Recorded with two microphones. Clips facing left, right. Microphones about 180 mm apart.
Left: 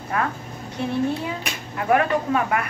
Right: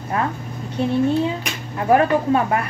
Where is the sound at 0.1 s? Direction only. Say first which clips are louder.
Right 2 dB; 25° right (ahead or behind).